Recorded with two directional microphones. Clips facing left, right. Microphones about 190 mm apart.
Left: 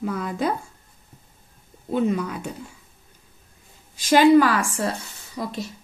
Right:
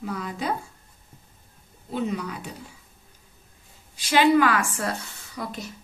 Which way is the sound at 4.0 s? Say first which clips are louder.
Left 4 dB; 45° left (ahead or behind).